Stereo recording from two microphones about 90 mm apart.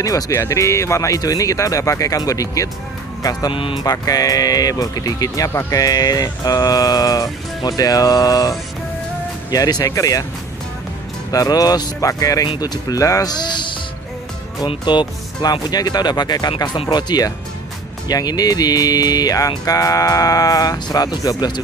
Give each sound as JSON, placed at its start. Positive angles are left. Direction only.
{"t": 0.0, "sound": "speech", "side_deg": 35}
{"t": 3.5, "sound": "speech", "side_deg": 75}
{"t": 3.8, "sound": "speech", "side_deg": 45}
{"t": 5.5, "sound": "speech", "side_deg": 30}
{"t": 5.8, "sound": "speech", "side_deg": 45}
{"t": 11.3, "sound": "speech", "side_deg": 45}